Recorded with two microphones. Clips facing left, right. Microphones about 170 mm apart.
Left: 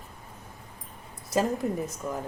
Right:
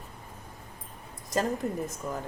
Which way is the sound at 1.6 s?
Centre (ahead or behind).